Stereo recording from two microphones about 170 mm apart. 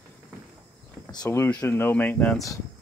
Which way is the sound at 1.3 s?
15° left (ahead or behind).